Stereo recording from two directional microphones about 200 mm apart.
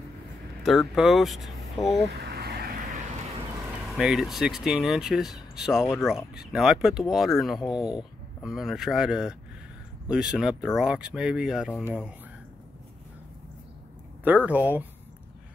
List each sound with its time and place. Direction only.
0.7 s speech: centre (ahead or behind)
2.1 s vehicle: 55° right (ahead or behind)
3.9 s speech: 5° right (ahead or behind)
14.2 s speech: 10° right (ahead or behind)